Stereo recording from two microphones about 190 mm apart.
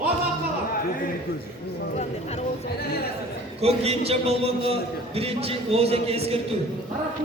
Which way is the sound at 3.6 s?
35° right (ahead or behind).